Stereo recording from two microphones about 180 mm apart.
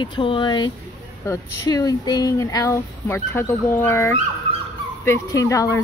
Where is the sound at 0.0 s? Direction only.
25° left (ahead or behind).